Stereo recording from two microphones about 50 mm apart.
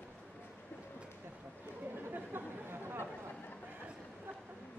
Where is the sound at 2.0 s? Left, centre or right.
Right.